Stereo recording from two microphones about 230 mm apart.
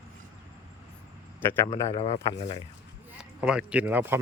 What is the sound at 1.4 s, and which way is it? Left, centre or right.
Speech, centre.